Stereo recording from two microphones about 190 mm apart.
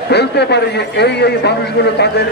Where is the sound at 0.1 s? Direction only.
60° left (ahead or behind).